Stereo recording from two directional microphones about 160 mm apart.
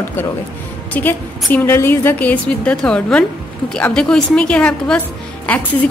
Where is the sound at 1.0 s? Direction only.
10° left (ahead or behind).